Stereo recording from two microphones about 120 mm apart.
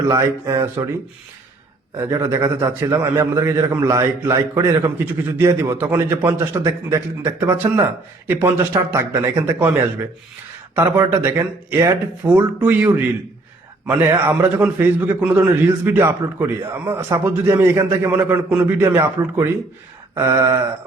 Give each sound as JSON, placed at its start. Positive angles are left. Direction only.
{"t": 0.1, "sound": "a man's voice", "side_deg": -25}
{"t": 2.0, "sound": "a man's voice", "side_deg": -25}
{"t": 10.8, "sound": "a man's voice", "side_deg": -20}
{"t": 12.2, "sound": "a man's voice", "side_deg": -10}
{"t": 20.1, "sound": "a man's voice", "side_deg": -25}